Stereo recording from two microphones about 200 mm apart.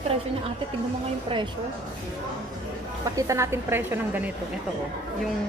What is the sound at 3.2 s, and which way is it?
A woman's voice, 15° right (ahead or behind).